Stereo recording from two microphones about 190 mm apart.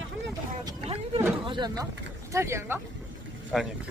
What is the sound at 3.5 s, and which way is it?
Speech, centre (ahead or behind).